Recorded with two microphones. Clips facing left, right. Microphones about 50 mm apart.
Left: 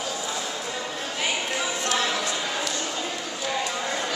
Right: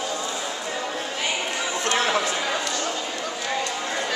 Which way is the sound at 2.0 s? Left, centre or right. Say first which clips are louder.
Right 5 dB; right.